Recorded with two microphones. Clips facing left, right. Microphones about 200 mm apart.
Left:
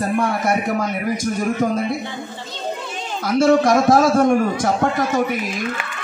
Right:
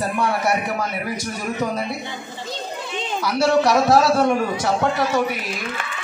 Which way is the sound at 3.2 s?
50° left (ahead or behind).